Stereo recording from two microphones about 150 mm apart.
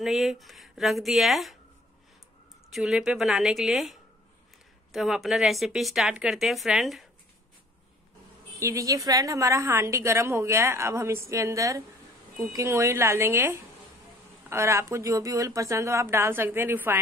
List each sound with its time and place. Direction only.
0.0 s a woman's voice: centre (ahead or behind)
2.7 s a woman's voice: 5° right (ahead or behind)
8.5 s a woman's voice: 20° right (ahead or behind)